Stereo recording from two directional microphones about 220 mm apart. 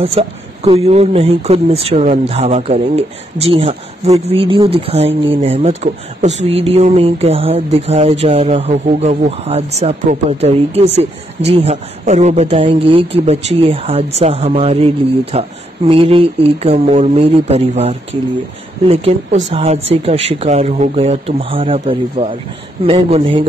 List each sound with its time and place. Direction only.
0.0 s speech: 25° right (ahead or behind)